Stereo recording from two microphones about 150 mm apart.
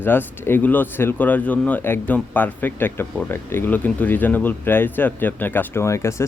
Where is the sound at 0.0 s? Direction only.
15° left (ahead or behind).